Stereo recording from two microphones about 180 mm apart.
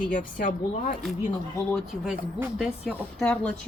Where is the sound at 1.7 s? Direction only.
Centre (ahead or behind).